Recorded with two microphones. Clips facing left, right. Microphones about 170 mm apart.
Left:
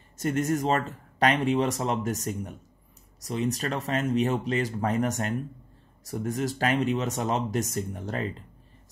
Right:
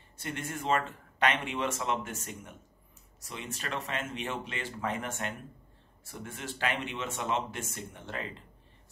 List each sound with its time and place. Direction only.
0.2 s speech: 40° left (ahead or behind)